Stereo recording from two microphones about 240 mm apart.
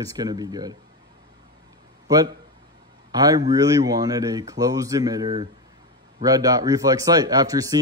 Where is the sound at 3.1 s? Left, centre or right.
Centre.